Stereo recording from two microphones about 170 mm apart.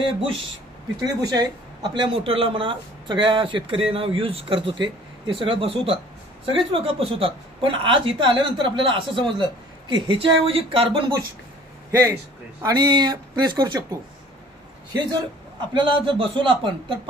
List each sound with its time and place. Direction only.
1.0 s a man's voice: 20° right (ahead or behind)
15.7 s speech: 30° right (ahead or behind)